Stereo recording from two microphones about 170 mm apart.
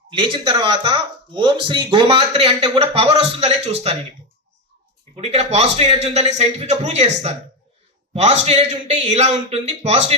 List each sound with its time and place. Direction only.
0.1 s speech: 30° right (ahead or behind)
5.1 s speech: 35° right (ahead or behind)